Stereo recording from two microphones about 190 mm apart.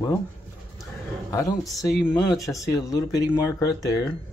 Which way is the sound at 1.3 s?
15° left (ahead or behind).